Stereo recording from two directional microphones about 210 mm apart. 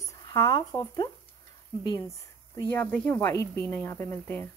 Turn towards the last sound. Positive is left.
turn(degrees=10)  # may be behind; listen again after turning